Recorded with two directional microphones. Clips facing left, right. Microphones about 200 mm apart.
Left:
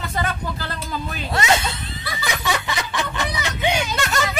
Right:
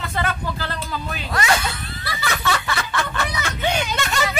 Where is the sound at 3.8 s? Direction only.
Centre (ahead or behind).